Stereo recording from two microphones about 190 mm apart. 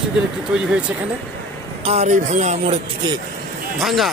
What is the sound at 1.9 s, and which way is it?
Speech, 35° right (ahead or behind).